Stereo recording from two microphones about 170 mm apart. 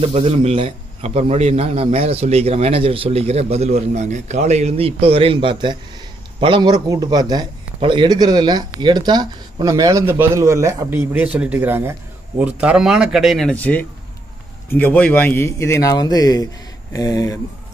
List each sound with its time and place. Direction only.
0.0 s a man's voice: 35° right (ahead or behind); by 17.4 s 20° left (ahead or behind)